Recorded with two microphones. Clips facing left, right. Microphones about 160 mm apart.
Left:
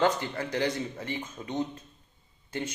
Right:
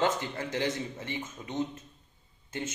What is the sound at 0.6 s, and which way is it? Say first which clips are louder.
Speech: left 2 dB; 35° left (ahead or behind).